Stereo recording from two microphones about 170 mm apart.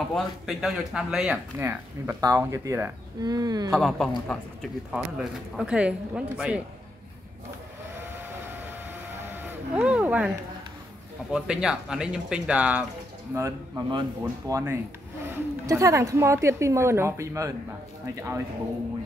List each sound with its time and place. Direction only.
0.1 s speech: centre (ahead or behind); by 3.7 s 25° right (ahead or behind)
3.7 s speech: centre (ahead or behind)
9.3 s vehicle: 10° right (ahead or behind)
9.8 s speech: 5° right (ahead or behind)
11.3 s speech: 5° right (ahead or behind)
13.3 s speech: 20° right (ahead or behind)